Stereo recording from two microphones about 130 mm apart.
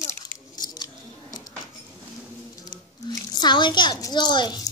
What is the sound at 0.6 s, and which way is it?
Scissors, 35° left (ahead or behind).